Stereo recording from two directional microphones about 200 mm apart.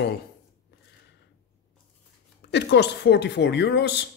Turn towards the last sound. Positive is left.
turn(degrees=60)  # may be behind; listen again after turning